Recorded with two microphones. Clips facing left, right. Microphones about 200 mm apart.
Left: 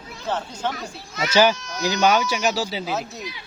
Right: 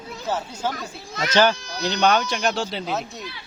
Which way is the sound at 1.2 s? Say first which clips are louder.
Left 1 dB; 10° left (ahead or behind).